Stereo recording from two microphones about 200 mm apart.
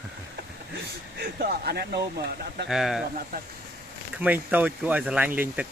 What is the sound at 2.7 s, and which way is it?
Speech, centre (ahead or behind).